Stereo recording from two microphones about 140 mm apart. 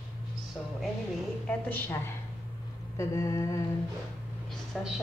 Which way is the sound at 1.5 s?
15° left (ahead or behind).